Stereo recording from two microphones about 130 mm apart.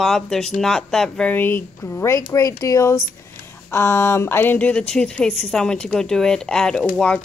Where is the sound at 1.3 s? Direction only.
15° left (ahead or behind).